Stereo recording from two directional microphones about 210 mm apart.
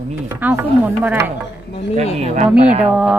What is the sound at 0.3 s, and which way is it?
Speech, 10° right (ahead or behind).